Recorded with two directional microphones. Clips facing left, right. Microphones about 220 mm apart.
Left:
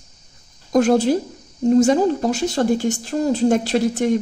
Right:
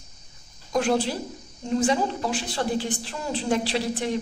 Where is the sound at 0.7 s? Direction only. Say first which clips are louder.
Left 8 dB; 45° left (ahead or behind).